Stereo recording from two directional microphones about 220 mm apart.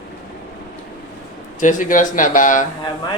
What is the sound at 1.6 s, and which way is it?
Speech, 35° left (ahead or behind).